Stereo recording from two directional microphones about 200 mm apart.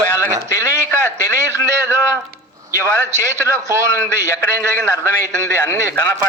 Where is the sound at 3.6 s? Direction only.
15° right (ahead or behind).